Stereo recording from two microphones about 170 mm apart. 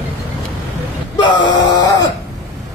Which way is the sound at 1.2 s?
25° left (ahead or behind).